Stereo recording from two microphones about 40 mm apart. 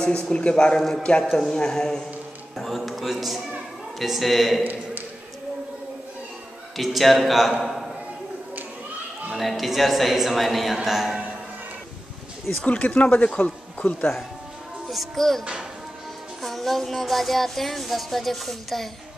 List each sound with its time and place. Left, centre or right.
0.0 s a man's voice: left
1.5 s speech: centre
2.5 s speech: centre
6.8 s speech: centre
7.6 s a sound: centre
9.5 s speech: centre
12.6 s a man's voice: left
14.9 s speech: centre
16.4 s speech: centre